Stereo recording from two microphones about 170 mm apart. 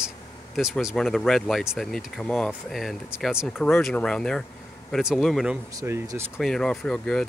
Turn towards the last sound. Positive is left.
turn(degrees=5)  # may be behind; listen again after turning